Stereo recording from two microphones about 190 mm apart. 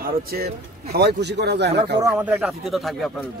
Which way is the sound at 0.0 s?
55° right (ahead or behind).